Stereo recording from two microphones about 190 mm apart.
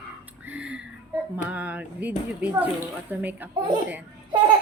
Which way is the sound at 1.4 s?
5° right (ahead or behind).